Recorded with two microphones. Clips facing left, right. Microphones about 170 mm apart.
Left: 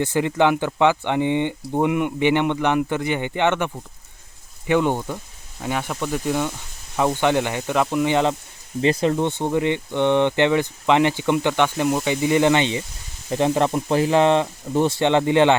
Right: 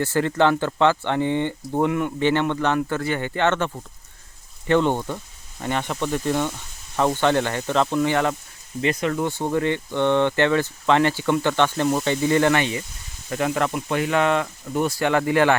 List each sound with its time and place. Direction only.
0.0 s speech: 15° left (ahead or behind)
8.8 s speech: 30° left (ahead or behind)